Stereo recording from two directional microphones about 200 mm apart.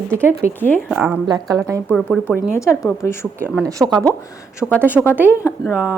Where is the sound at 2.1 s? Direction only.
10° left (ahead or behind).